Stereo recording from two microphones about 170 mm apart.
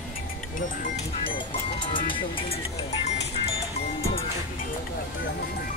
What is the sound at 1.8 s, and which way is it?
Speech, 30° left (ahead or behind).